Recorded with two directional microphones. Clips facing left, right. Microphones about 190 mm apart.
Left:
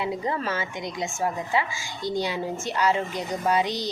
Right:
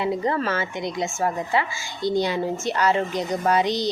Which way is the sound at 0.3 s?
15° left (ahead or behind).